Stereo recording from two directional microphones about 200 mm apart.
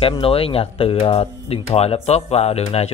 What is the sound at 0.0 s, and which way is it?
Speech, 30° left (ahead or behind).